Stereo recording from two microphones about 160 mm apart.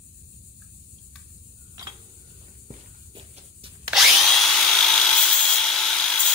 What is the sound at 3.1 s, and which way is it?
Hiss, 35° right (ahead or behind).